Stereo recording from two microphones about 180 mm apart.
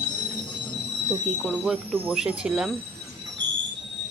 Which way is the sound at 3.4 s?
85° right.